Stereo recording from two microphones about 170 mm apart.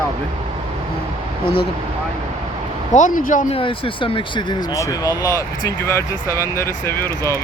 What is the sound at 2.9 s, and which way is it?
Speech, 50° left (ahead or behind).